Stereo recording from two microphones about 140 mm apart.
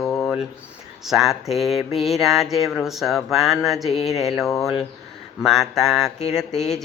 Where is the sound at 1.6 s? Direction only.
45° left (ahead or behind).